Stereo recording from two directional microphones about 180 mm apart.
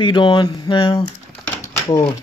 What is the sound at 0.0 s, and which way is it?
Speech, 25° left (ahead or behind).